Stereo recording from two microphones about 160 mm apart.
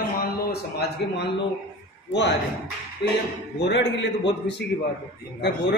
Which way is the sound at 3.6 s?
90° left.